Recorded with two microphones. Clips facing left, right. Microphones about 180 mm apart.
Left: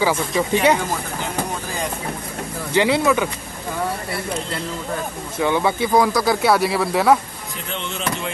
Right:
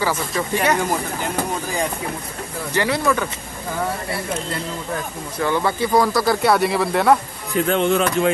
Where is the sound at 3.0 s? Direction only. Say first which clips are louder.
Left 2 dB; 10° left (ahead or behind).